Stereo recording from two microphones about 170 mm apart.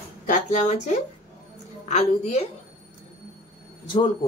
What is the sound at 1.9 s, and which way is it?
Speech, 40° left (ahead or behind).